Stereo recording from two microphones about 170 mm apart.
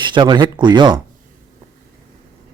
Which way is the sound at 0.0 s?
25° right (ahead or behind).